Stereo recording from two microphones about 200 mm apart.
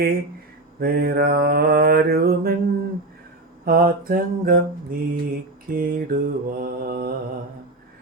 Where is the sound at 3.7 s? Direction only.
45° right (ahead or behind).